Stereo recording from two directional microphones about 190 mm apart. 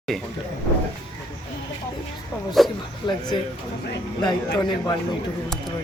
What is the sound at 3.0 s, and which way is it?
Speech, 25° left (ahead or behind).